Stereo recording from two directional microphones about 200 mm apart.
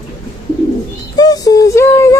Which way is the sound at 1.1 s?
20° left (ahead or behind).